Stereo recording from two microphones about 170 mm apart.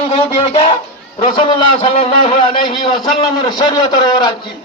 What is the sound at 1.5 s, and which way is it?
A man's voice, 30° left (ahead or behind).